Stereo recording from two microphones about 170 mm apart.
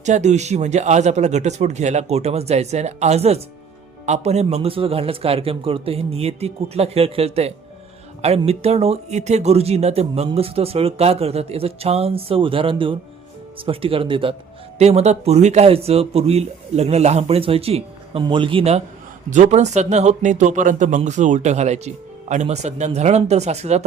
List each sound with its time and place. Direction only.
0.0 s speech: 45° right (ahead or behind)